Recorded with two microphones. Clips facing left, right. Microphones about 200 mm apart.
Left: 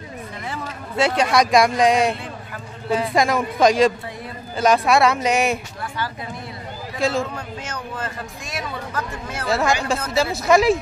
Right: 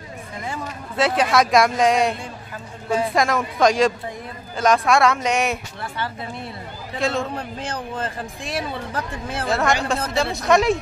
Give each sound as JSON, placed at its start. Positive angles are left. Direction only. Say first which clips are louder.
{"t": 0.9, "sound": "a man's voice", "louder": "even", "side_deg": 0}
{"t": 7.0, "sound": "a man's voice", "louder": "left 2 dB", "side_deg": 0}
{"t": 7.3, "sound": "speech", "louder": "right 2 dB", "side_deg": -30}
{"t": 9.5, "sound": "a man's voice", "louder": "left 1 dB", "side_deg": 0}